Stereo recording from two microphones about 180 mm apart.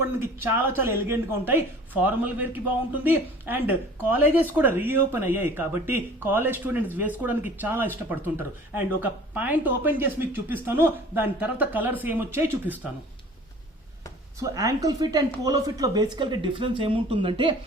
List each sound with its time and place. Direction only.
0.2 s speech: 10° right (ahead or behind)
14.3 s a woman's voice: 20° right (ahead or behind)